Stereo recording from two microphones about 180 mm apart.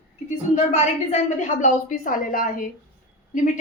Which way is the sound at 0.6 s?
40° left (ahead or behind).